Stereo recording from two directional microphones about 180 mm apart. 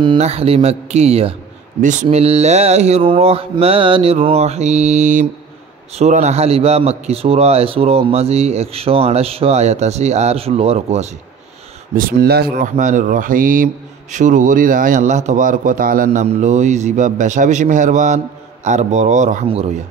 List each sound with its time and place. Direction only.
0.2 s a man's voice: 35° right (ahead or behind)
11.9 s a man's voice: 55° right (ahead or behind); by 19.7 s 35° right (ahead or behind)